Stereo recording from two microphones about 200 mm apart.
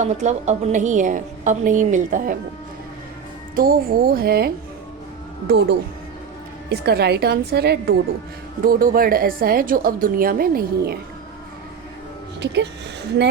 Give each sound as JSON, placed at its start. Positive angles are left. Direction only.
{"t": 0.0, "sound": "a woman's voice", "side_deg": -35}
{"t": 3.5, "sound": "a woman's voice", "side_deg": -45}